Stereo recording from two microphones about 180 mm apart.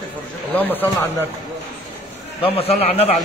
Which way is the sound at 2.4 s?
35° left (ahead or behind).